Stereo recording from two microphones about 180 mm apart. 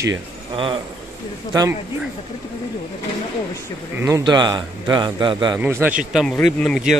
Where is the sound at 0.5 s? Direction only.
30° right (ahead or behind).